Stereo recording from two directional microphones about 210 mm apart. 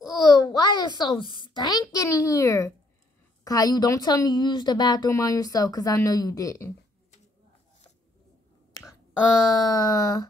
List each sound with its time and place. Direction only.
0.1 s a sound: 15° left (ahead or behind)
3.4 s speech: 15° left (ahead or behind)
9.5 s speech: 20° left (ahead or behind)